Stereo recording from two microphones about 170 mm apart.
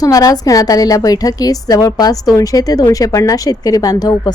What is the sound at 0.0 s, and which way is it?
A woman's voice, 20° left (ahead or behind).